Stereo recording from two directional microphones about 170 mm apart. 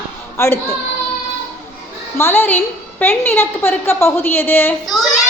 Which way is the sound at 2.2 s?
15° left (ahead or behind).